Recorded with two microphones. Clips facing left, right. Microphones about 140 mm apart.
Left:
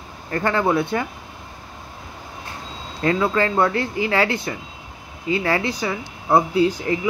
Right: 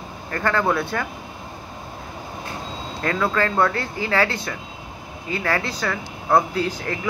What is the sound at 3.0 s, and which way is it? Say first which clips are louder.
Speech: left 3 dB; 25° left (ahead or behind).